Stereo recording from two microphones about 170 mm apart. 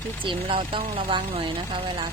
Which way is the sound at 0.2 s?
30° right (ahead or behind).